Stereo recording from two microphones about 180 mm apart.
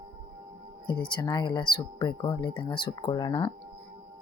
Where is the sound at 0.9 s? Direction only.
25° left (ahead or behind).